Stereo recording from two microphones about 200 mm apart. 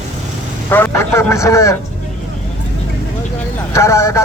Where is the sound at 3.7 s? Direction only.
15° left (ahead or behind).